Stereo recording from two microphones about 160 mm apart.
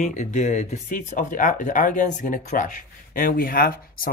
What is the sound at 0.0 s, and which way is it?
Speech, 50° left (ahead or behind).